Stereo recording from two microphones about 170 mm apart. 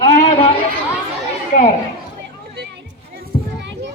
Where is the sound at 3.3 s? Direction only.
55° left (ahead or behind).